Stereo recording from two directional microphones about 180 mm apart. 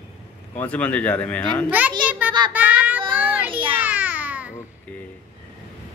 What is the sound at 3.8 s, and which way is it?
Babbling, 10° right (ahead or behind).